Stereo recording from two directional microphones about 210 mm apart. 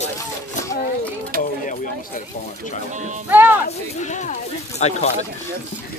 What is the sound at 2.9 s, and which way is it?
Speech, 35° right (ahead or behind).